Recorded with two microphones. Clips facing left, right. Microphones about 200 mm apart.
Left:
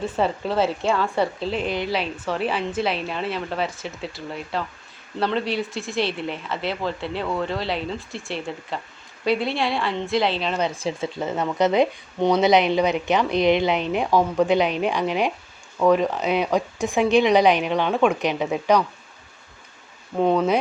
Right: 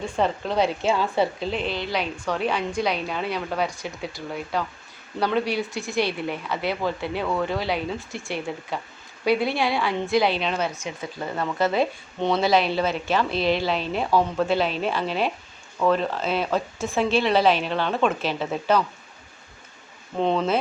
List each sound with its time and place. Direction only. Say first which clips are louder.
0.0 s a woman's voice: left 1 dB; 5° left (ahead or behind)
1.6 s a woman's voice: left 3 dB; 50° left (ahead or behind)
1.9 s a woman's voice: left 1 dB; 5° left (ahead or behind)
10.7 s speech: left 6 dB; 30° left (ahead or behind); by 18.8 s 15° left (ahead or behind)
20.1 s speech: left 3 dB; 10° left (ahead or behind)